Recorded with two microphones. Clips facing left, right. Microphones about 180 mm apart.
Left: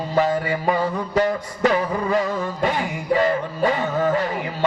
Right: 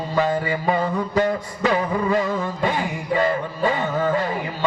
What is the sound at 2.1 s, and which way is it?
Music, 40° left (ahead or behind).